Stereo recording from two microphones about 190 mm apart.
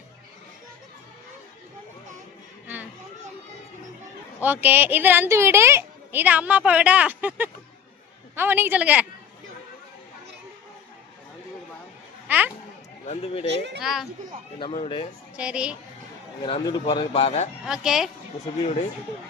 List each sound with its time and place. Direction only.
4.4 s speech: 10° right (ahead or behind)
12.3 s a sound: 10° right (ahead or behind)
13.1 s speech: 30° left (ahead or behind)
13.8 s speech: centre (ahead or behind)
14.6 s speech: 30° left (ahead or behind)
15.4 s speech: 5° right (ahead or behind)
16.4 s speech: 25° left (ahead or behind)
17.7 s speech: centre (ahead or behind)